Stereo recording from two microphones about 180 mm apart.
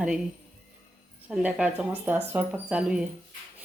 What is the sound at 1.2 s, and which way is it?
A woman's voice, 5° right (ahead or behind).